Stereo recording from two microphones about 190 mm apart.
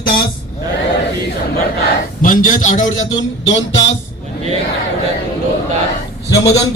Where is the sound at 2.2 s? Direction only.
45° left (ahead or behind).